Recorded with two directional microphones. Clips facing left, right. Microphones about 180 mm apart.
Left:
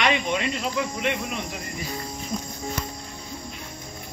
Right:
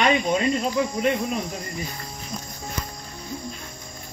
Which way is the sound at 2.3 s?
5° left (ahead or behind).